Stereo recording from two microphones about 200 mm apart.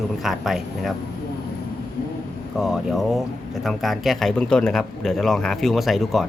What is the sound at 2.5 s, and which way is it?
Speech, centre (ahead or behind).